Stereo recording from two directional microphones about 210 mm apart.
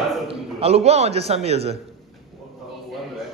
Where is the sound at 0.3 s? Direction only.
30° right (ahead or behind).